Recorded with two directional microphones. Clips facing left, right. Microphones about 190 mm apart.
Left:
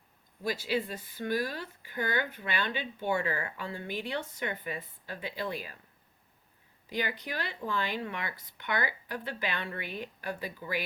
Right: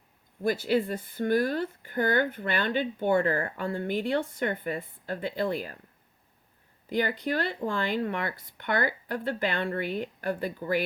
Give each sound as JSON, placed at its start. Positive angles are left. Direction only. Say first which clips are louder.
{"t": 0.4, "sound": "speech", "louder": "right 6 dB", "side_deg": -50}
{"t": 6.9, "sound": "speech", "louder": "right 7 dB", "side_deg": -55}